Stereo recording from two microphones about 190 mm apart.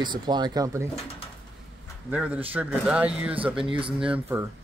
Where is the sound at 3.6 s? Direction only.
25° right (ahead or behind).